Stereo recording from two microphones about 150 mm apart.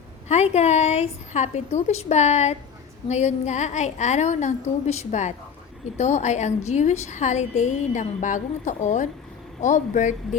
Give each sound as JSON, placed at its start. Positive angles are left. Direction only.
{"t": 0.3, "sound": "a woman's voice", "side_deg": 45}